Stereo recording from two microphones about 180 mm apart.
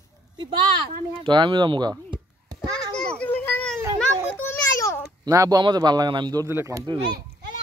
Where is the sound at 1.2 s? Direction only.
25° right (ahead or behind).